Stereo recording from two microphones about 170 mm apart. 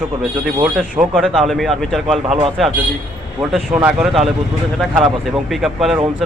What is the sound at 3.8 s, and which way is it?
Speech, centre (ahead or behind).